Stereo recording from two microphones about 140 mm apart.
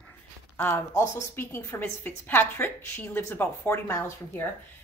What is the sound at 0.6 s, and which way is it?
A woman's voice, 15° left (ahead or behind).